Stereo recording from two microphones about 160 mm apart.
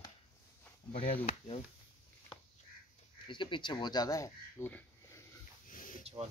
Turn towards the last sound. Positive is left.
turn(degrees=60)  # may be behind; listen again after turning